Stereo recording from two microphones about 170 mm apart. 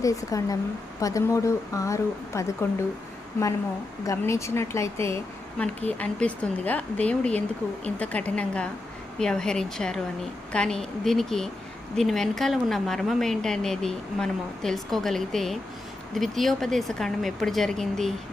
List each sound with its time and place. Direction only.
0.0 s speech: 20° left (ahead or behind)
4.0 s a woman's voice: 15° left (ahead or behind)